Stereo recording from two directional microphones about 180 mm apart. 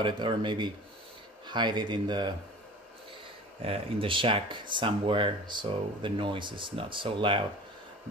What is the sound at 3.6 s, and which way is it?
Speech, 30° right (ahead or behind).